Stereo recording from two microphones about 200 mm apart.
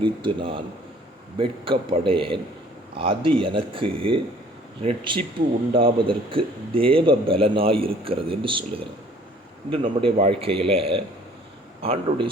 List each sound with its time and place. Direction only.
0.0 s a man's voice: 25° right (ahead or behind)